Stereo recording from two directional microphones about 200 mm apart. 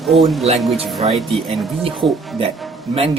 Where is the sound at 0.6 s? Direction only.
Centre (ahead or behind).